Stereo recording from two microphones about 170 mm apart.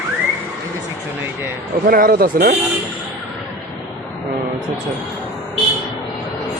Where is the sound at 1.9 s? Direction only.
60° right (ahead or behind).